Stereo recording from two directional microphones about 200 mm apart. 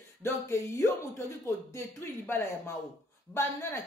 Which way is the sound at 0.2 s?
15° left (ahead or behind).